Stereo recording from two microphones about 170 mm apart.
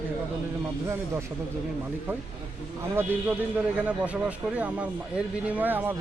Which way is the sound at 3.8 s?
10° right (ahead or behind).